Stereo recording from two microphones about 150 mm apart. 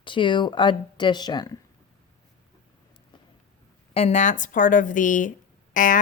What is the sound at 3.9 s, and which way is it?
Speech, 45° left (ahead or behind).